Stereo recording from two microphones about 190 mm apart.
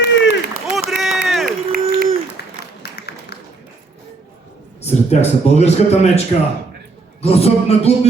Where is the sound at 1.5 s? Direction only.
50° right (ahead or behind).